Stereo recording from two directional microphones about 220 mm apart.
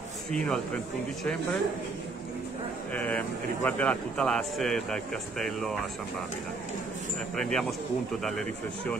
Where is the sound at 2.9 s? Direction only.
5° left (ahead or behind).